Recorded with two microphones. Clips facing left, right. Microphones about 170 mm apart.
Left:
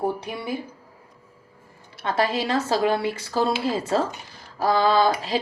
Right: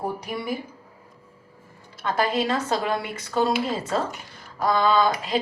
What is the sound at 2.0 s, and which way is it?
A woman's voice, 30° left (ahead or behind).